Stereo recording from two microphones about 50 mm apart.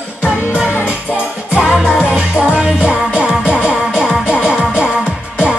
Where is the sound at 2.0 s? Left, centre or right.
Centre.